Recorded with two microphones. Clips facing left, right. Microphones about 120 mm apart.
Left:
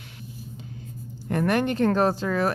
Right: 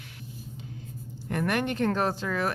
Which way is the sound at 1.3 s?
35° left (ahead or behind).